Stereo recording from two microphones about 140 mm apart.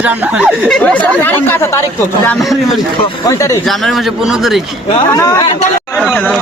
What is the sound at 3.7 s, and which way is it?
Speech, centre (ahead or behind).